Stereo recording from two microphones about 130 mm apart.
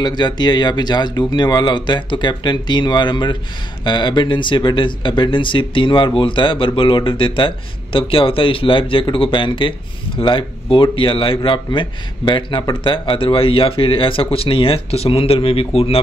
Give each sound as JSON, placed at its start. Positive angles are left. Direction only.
{"t": 0.0, "sound": "speech", "side_deg": 35}